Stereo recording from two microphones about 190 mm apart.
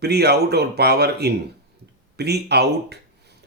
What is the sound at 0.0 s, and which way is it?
Speech, 60° right (ahead or behind).